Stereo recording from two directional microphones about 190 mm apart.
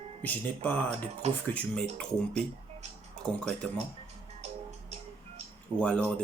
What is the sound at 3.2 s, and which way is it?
Speech, 5° left (ahead or behind).